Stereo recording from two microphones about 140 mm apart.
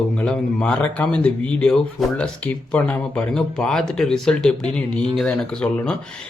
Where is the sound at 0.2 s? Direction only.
10° left (ahead or behind).